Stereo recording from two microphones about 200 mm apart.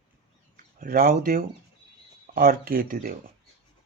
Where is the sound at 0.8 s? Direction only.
45° right (ahead or behind).